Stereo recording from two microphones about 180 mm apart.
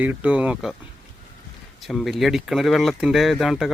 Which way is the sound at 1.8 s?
Centre (ahead or behind).